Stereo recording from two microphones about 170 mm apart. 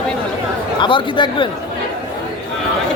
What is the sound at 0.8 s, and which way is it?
Speech, 30° left (ahead or behind).